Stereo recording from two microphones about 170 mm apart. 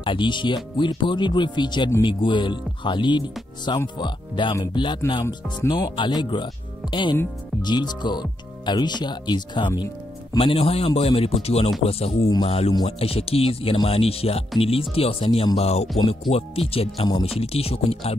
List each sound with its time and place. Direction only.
0.0 s speech: 30° left (ahead or behind)